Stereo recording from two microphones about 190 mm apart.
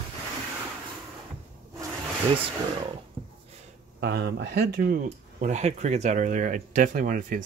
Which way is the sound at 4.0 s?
55° right (ahead or behind).